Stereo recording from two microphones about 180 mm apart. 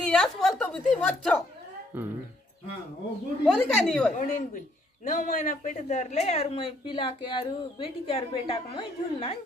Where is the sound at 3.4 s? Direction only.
5° left (ahead or behind).